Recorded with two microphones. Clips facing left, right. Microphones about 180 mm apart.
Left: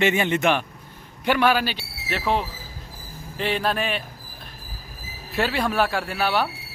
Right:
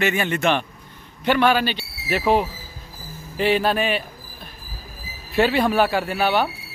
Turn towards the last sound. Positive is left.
turn(degrees=0)  # may be behind; listen again after turning